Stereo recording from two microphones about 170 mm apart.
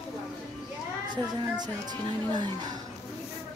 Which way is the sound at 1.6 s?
25° right (ahead or behind).